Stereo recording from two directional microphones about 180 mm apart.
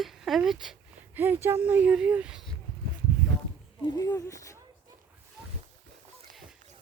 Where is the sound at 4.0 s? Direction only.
15° left (ahead or behind).